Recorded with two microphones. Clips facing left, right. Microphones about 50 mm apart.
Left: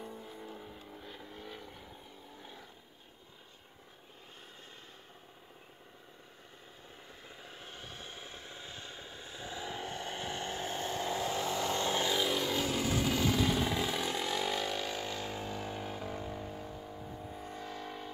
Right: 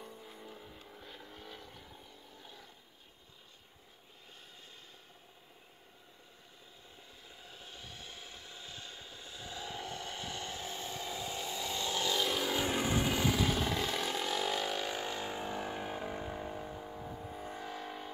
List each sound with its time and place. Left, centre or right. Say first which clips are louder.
0.0 s vehicle: left 4 dB; centre
7.3 s vehicle: left 2 dB; left
11.8 s vehicle: even; left
12.3 s vehicle: left 1 dB; centre
12.6 s vehicle: even; right; by 18.1 s centre